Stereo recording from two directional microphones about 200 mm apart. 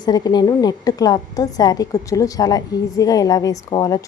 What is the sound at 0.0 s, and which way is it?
A woman's voice, 20° left (ahead or behind).